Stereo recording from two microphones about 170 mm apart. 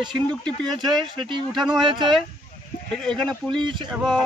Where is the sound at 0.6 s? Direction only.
Centre (ahead or behind).